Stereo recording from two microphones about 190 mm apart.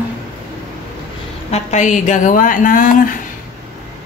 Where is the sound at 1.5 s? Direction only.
40° left (ahead or behind).